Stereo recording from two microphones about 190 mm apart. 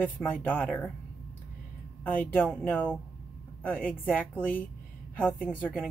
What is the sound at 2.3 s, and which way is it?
Speech, 10° left (ahead or behind).